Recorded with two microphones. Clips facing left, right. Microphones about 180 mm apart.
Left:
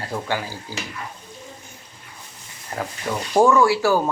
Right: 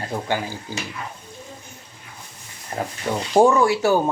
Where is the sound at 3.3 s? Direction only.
25° right (ahead or behind).